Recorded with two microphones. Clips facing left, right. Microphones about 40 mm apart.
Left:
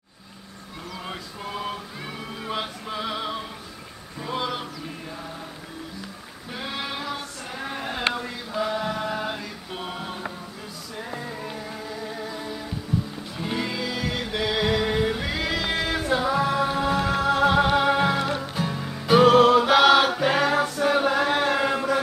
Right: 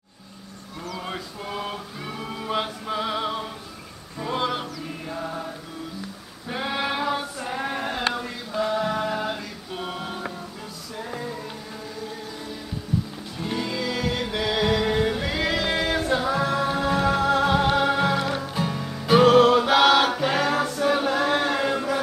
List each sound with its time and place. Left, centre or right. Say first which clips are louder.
0.9 s mantra: right 2 dB; centre
4.2 s a sound: right 3 dB; centre
5.1 s music: right 6 dB; right
6.5 s a sound: right 5 dB; centre
11.0 s music: right 1 dB; centre
13.4 s music: even; centre